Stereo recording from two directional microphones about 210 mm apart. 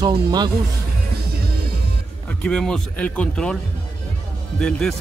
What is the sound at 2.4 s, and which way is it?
Speech, 5° left (ahead or behind).